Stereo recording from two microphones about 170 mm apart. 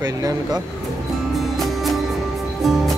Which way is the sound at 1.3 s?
Centre (ahead or behind).